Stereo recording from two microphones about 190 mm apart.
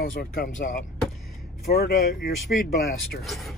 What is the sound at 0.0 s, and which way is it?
Speech, 50° left (ahead or behind).